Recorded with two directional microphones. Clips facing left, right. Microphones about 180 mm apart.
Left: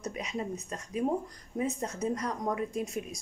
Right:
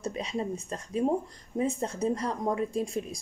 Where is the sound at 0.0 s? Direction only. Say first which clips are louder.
Right 3 dB; 30° right (ahead or behind).